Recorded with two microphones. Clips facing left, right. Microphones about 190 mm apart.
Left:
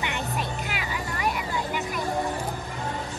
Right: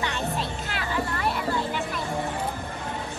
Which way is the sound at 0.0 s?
15° left (ahead or behind).